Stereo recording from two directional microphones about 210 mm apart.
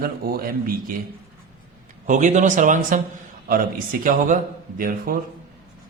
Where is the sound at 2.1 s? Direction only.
35° right (ahead or behind).